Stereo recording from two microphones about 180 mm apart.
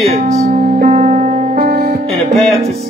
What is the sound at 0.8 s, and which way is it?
Music, 45° right (ahead or behind).